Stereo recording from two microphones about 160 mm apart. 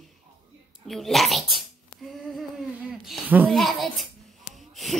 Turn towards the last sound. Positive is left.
turn(degrees=0)  # may be behind; listen again after turning